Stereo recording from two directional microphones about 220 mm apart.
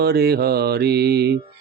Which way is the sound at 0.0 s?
45° right (ahead or behind).